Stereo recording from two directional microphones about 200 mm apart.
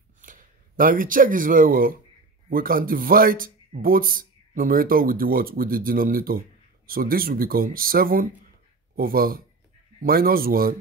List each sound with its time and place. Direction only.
0.2 s speech: 40° right (ahead or behind)